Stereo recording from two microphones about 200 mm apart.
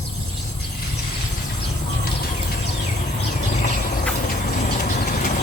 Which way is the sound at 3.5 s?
40° left (ahead or behind).